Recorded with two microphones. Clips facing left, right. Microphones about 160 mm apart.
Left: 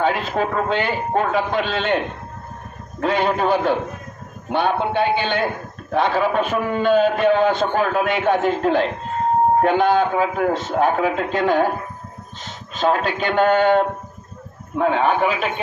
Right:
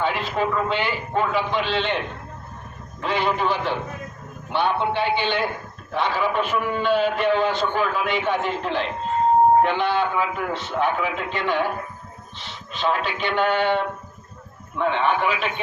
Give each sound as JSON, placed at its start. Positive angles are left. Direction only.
{"t": 0.0, "sound": "a man's voice", "side_deg": 45}
{"t": 3.0, "sound": "a man's voice", "side_deg": 45}